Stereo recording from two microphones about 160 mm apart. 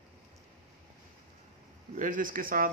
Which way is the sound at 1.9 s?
55° right (ahead or behind).